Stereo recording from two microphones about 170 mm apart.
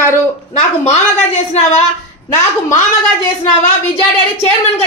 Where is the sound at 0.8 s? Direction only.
40° left (ahead or behind).